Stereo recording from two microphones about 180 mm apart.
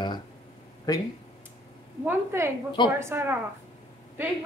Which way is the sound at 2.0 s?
15° right (ahead or behind).